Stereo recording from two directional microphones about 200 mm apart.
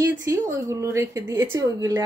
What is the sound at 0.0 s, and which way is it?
Speech, 15° right (ahead or behind).